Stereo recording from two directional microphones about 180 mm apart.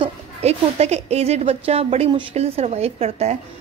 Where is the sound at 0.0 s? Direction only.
35° right (ahead or behind).